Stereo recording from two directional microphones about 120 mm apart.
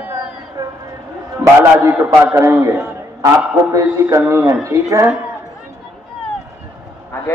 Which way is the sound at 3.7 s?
25° right (ahead or behind).